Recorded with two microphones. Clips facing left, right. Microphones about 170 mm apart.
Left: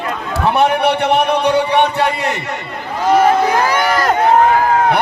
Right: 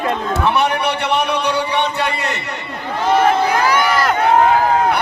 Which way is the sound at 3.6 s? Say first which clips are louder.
Left 1 dB; 45° left (ahead or behind).